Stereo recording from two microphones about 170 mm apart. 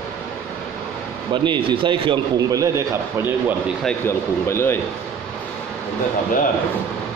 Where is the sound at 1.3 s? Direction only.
30° right (ahead or behind).